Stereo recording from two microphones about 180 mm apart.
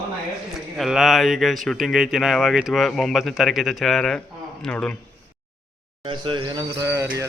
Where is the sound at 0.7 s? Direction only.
Centre (ahead or behind).